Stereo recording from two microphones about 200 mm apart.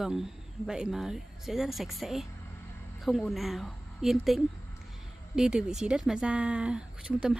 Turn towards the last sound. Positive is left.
turn(degrees=-5)  # may be behind; listen again after turning